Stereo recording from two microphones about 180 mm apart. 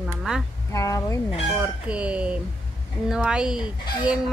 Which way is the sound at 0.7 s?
15° left (ahead or behind).